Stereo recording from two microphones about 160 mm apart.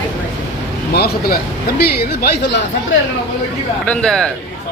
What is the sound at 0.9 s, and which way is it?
Speech, 80° left.